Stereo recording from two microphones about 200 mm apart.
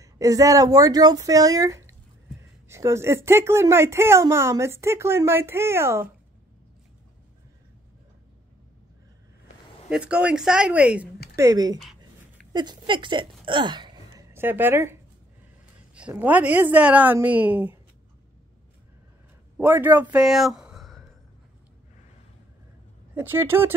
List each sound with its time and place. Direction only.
0.0 s speech: 15° right (ahead or behind)
9.8 s speech: 5° right (ahead or behind)
11.3 s speech: 15° right (ahead or behind)
12.5 s a sound: 25° right (ahead or behind)
15.9 s speech: 10° right (ahead or behind)
19.5 s a man's voice: 10° right (ahead or behind)
23.1 s speech: 10° right (ahead or behind)